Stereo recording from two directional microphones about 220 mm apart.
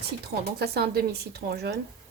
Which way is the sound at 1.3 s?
45° right (ahead or behind).